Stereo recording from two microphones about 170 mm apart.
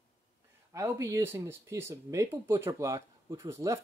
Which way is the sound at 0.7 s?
15° right (ahead or behind).